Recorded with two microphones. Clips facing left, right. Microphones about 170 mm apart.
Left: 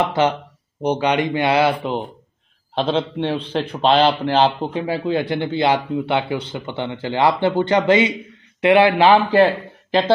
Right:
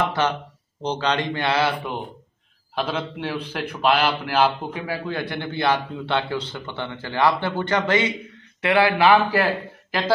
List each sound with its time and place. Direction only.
0.8 s a man's voice: 15° left (ahead or behind)